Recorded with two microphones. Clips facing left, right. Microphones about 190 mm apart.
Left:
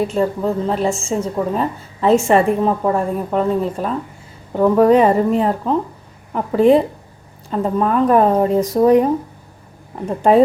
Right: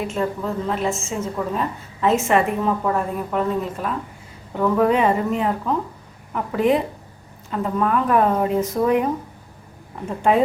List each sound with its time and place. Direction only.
0.0 s a woman's voice: 35° left (ahead or behind)